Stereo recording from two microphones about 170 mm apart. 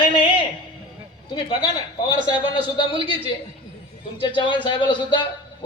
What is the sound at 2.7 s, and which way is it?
A man's voice, 30° left (ahead or behind).